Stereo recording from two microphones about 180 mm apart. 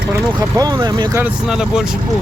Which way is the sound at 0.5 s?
20° right (ahead or behind).